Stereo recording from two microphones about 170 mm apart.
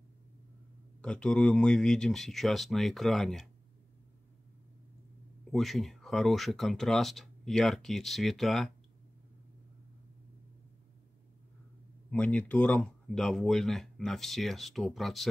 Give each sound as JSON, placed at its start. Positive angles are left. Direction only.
{"t": 1.0, "sound": "speech", "side_deg": 5}
{"t": 5.5, "sound": "speech", "side_deg": 0}
{"t": 12.1, "sound": "speech", "side_deg": 10}